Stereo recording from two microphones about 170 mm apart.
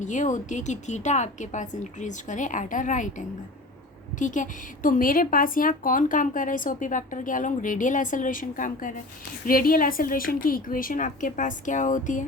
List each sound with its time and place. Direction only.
0.0 s a woman's voice: 45° left (ahead or behind)